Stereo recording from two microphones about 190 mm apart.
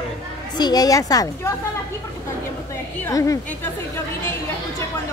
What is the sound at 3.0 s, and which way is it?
Speech, 15° left (ahead or behind).